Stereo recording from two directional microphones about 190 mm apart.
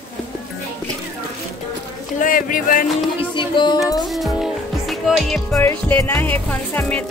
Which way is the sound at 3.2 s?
25° left (ahead or behind).